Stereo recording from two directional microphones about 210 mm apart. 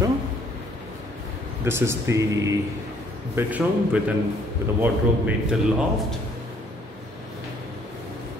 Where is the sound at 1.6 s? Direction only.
10° right (ahead or behind).